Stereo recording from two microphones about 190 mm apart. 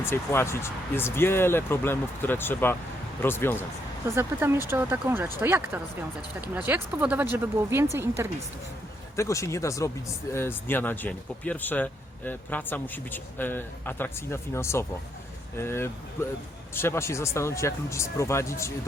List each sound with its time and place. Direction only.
0.0 s speech: 15° left (ahead or behind)
4.0 s speech: 15° right (ahead or behind)
9.1 s speech: 15° left (ahead or behind)